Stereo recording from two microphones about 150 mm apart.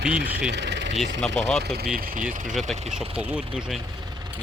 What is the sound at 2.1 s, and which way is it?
Speech, 60° right (ahead or behind).